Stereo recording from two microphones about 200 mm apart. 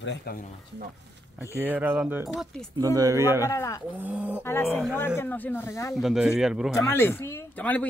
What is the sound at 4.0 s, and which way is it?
Speech, 5° right (ahead or behind).